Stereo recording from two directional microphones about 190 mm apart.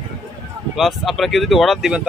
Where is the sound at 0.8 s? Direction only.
Centre (ahead or behind).